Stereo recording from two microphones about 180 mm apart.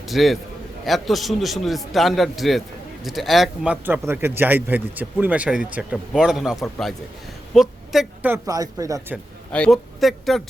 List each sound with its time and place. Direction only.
0.1 s a man's voice: centre (ahead or behind)
8.4 s speech: 20° right (ahead or behind)
9.5 s a man's voice: 5° left (ahead or behind)